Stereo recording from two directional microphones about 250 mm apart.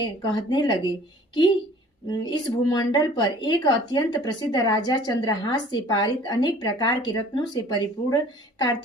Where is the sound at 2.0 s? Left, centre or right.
Centre.